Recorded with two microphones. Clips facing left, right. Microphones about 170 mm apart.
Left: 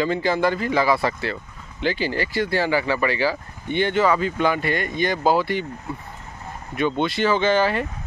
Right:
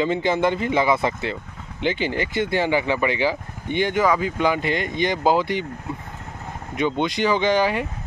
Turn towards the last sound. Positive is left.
turn(degrees=-15)  # may be behind; listen again after turning